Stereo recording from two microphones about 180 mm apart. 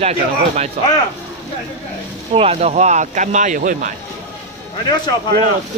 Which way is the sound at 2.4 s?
35° right (ahead or behind).